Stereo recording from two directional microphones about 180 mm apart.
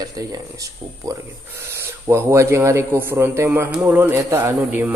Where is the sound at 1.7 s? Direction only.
15° right (ahead or behind).